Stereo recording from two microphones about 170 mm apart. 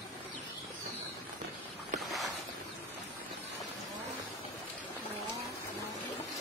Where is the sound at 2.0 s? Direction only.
Centre (ahead or behind).